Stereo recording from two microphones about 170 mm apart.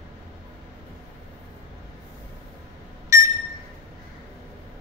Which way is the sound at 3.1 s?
15° right (ahead or behind).